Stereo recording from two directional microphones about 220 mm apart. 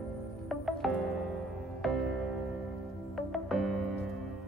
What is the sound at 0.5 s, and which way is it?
Music, centre (ahead or behind).